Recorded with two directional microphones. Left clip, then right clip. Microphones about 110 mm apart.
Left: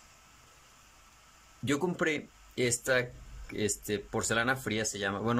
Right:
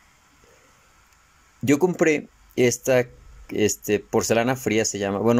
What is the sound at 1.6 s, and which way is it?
Speech, 45° right (ahead or behind).